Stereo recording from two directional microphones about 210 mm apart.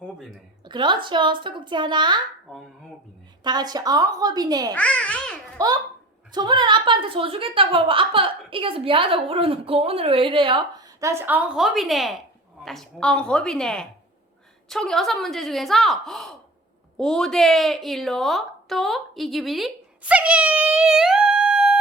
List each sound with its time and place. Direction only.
0.0 s a sound: 5° right (ahead or behind)
0.6 s a woman's voice: 20° right (ahead or behind)
3.4 s a woman's voice: 20° right (ahead or behind)
4.7 s speech: 5° left (ahead or behind)
5.6 s a woman's voice: 15° right (ahead or behind)